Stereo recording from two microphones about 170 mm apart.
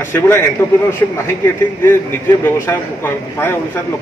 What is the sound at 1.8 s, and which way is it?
Speech, 15° left (ahead or behind).